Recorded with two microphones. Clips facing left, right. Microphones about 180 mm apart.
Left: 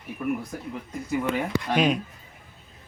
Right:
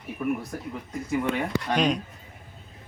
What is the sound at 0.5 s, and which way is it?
Speech, centre (ahead or behind).